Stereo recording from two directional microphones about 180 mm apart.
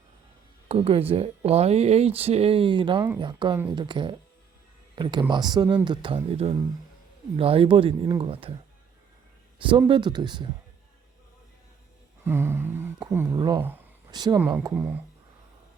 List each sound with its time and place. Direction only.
0.7 s speech: 35° right (ahead or behind)
9.6 s speech: 30° right (ahead or behind)
12.2 s speech: 15° right (ahead or behind)
13.6 s speech: 10° right (ahead or behind)
14.1 s speech: 25° right (ahead or behind)
14.8 s speech: 10° right (ahead or behind)